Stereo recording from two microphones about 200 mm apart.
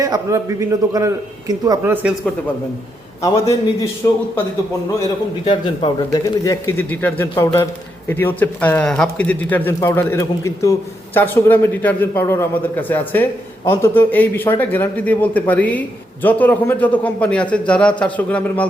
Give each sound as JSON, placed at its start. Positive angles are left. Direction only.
{"t": 0.0, "sound": "a man's voice", "side_deg": -15}
{"t": 3.2, "sound": "speech", "side_deg": 15}
{"t": 5.5, "sound": "speech", "side_deg": 25}